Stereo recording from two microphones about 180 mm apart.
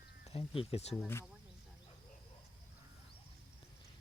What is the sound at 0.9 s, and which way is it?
Speech, 10° left (ahead or behind).